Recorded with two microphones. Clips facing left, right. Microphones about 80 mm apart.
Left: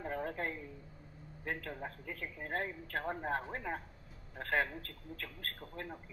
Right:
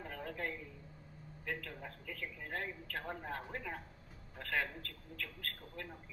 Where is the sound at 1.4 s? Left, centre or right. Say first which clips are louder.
Left 3 dB; left.